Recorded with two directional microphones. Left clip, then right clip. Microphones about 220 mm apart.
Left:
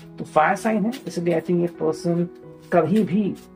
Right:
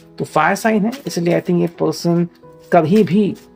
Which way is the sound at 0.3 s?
50° right (ahead or behind).